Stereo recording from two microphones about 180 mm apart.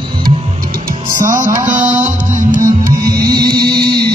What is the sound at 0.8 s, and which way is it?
Music, 50° right (ahead or behind).